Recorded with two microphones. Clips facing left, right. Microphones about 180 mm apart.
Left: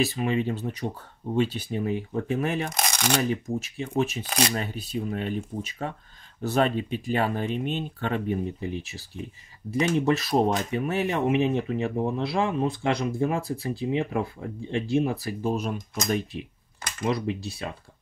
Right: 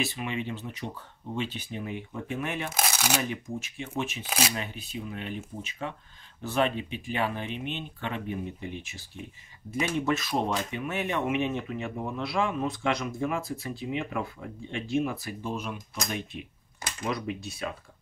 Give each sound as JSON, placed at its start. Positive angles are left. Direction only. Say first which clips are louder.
{"t": 0.0, "sound": "speech", "louder": "left 7 dB", "side_deg": 35}
{"t": 2.7, "sound": "shuffling cards", "louder": "left 2 dB", "side_deg": -5}
{"t": 3.5, "sound": "speech", "louder": "left 7 dB", "side_deg": 35}